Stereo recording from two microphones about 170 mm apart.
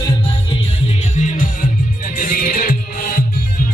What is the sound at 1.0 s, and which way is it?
Music, 45° left (ahead or behind).